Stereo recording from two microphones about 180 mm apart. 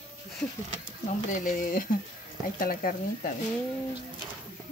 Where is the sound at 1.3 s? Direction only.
50° left (ahead or behind).